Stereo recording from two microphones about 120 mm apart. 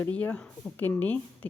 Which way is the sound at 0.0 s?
10° left (ahead or behind).